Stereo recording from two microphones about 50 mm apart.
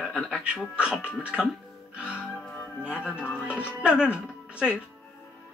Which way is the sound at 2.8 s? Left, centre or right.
Right.